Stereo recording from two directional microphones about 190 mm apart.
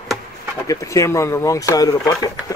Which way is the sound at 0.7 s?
15° left (ahead or behind).